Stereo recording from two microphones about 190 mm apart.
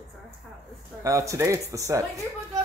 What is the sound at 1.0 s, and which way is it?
Speech, 15° right (ahead or behind).